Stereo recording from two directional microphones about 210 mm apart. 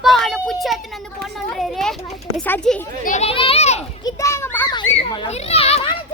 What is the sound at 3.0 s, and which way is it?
Speech, 35° left (ahead or behind).